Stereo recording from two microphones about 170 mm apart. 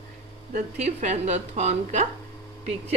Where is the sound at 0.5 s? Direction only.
45° right (ahead or behind).